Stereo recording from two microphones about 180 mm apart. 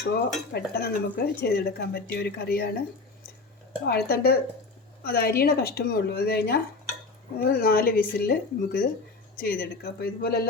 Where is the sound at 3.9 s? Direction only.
60° left (ahead or behind).